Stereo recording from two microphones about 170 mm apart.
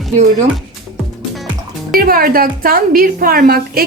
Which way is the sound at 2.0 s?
60° right (ahead or behind).